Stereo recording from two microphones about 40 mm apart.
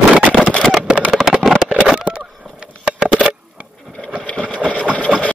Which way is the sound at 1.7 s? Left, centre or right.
Right.